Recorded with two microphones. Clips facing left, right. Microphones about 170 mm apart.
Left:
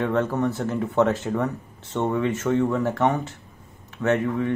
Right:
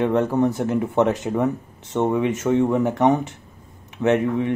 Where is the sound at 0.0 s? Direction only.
15° right (ahead or behind).